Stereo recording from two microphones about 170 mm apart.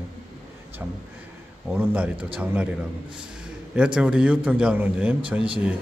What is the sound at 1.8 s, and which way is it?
Speech, 10° right (ahead or behind).